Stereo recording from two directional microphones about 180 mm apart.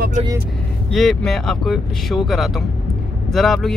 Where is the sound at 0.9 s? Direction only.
Centre (ahead or behind).